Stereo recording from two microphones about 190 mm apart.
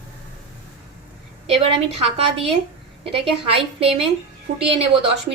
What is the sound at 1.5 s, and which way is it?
A woman's voice, 30° right (ahead or behind).